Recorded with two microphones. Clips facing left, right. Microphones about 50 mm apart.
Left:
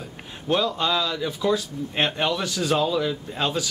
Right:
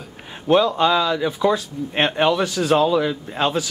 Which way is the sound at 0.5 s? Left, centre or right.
Centre.